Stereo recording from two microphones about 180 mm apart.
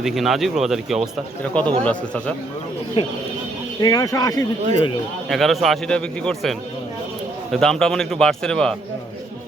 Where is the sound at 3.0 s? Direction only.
30° left (ahead or behind).